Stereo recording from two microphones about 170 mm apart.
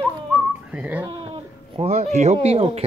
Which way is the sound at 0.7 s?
10° right (ahead or behind).